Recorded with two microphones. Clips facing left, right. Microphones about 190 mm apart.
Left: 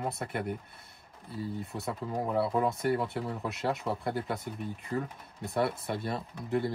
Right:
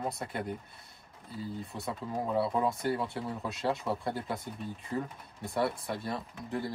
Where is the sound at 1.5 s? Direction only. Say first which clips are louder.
Left 1 dB; centre (ahead or behind).